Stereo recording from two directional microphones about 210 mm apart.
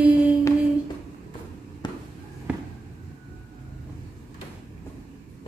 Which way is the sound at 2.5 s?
5° right (ahead or behind).